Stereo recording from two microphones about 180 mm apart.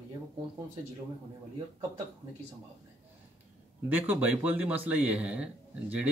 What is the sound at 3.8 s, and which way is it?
Speech, 10° right (ahead or behind).